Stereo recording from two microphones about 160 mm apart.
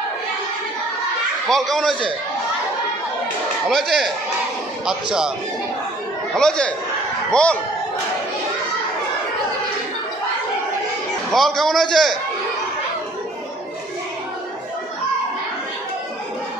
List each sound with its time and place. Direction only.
1.5 s a man's voice: centre (ahead or behind)
3.6 s a man's voice: centre (ahead or behind)
6.3 s a man's voice: 5° left (ahead or behind)
11.3 s a man's voice: centre (ahead or behind)